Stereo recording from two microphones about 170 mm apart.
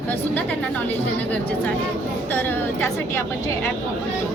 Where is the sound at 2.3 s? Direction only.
10° left (ahead or behind).